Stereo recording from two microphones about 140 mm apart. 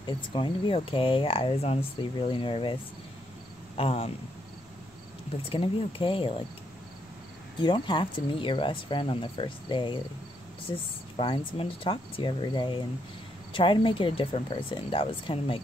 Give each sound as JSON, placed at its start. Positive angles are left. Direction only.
{"t": 0.0, "sound": "speech", "side_deg": 35}
{"t": 3.7, "sound": "cricket", "side_deg": 45}
{"t": 5.4, "sound": "speech", "side_deg": 40}
{"t": 7.5, "sound": "speech", "side_deg": 35}